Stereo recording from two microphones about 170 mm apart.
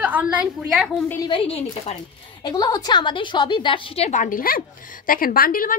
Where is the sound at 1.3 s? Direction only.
35° left (ahead or behind).